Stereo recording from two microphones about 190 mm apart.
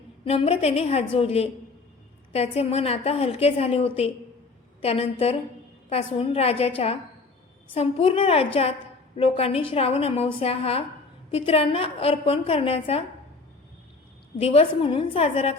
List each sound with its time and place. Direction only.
0.3 s a woman's voice: 30° left (ahead or behind)
14.3 s a woman's voice: 30° left (ahead or behind)